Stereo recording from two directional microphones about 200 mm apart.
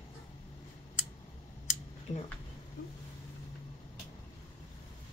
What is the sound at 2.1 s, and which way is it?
Speech, 35° left (ahead or behind).